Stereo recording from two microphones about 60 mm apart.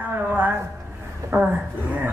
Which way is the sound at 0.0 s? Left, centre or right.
Right.